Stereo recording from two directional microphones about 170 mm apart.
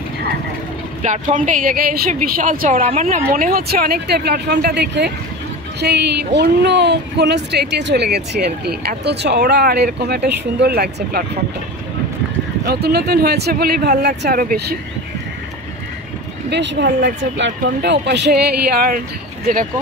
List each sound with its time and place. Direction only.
1.0 s a woman's voice: 45° right (ahead or behind)
2.9 s speech: 40° right (ahead or behind)
3.3 s speech: 55° right (ahead or behind)
12.6 s speech: 70° right (ahead or behind)
16.4 s speech: 90° right; by 19.0 s 60° right (ahead or behind)